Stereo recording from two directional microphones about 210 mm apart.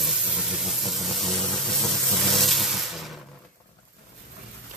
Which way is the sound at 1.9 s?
Centre (ahead or behind).